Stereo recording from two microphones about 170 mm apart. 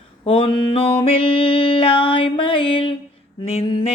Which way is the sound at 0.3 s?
30° left (ahead or behind).